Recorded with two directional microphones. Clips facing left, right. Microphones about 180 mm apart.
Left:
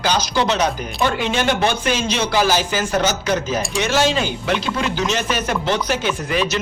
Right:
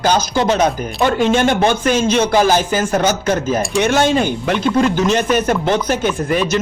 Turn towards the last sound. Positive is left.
turn(degrees=-50)  # may be behind; listen again after turning